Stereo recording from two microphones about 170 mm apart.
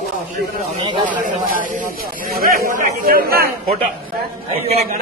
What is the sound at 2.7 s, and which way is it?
Speech, 50° right (ahead or behind).